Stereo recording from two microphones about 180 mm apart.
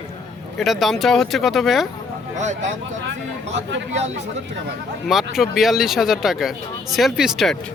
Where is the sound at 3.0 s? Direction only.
80° right.